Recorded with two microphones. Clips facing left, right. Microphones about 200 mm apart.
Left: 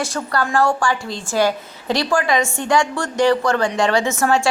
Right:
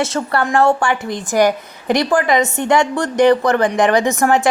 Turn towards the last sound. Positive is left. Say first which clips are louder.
# right 3 dB
turn(degrees=-15)  # may be behind; listen again after turning